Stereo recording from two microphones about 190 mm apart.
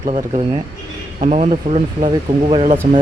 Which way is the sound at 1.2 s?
35° right (ahead or behind).